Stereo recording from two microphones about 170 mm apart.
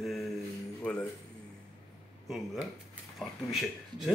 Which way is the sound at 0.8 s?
5° left (ahead or behind).